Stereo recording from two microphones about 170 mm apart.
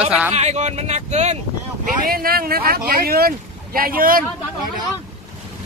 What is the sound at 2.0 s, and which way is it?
Speech, 60° right (ahead or behind).